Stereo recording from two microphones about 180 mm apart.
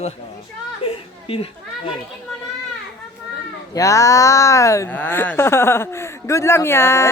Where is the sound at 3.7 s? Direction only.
20° left (ahead or behind).